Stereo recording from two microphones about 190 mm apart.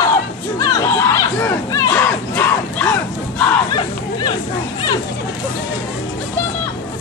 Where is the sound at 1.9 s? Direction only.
10° left (ahead or behind).